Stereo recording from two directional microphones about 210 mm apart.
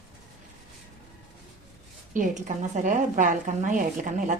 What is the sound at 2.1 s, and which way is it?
A woman's voice, 35° right (ahead or behind).